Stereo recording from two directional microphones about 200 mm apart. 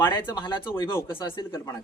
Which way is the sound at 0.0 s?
10° left (ahead or behind).